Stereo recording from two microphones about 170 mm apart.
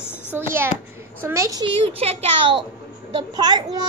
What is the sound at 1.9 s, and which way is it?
A child's voice, 35° right (ahead or behind).